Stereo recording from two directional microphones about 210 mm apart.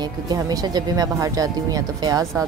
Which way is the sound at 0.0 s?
20° right (ahead or behind).